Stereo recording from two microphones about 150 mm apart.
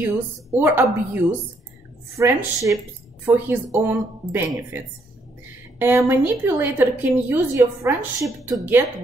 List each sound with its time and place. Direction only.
0.0 s a woman's voice: 15° right (ahead or behind)
5.8 s a woman's voice: 15° right (ahead or behind)